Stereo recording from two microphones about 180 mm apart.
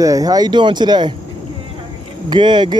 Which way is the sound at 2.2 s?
25° right (ahead or behind).